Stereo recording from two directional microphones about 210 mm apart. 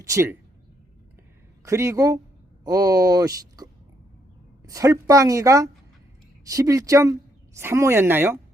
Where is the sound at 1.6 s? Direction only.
15° right (ahead or behind).